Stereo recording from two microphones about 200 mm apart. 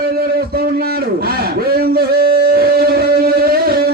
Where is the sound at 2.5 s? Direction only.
50° right (ahead or behind).